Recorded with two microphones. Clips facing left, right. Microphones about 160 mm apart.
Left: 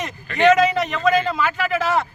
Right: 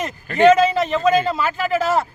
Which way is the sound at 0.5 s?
30° right (ahead or behind).